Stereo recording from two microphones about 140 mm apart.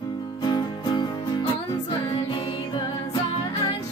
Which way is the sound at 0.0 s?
30° left (ahead or behind).